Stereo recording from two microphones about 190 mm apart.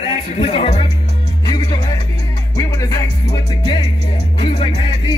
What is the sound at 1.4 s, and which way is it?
Music, 25° left (ahead or behind).